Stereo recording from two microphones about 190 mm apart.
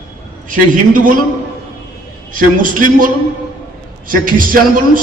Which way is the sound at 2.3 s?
45° right (ahead or behind).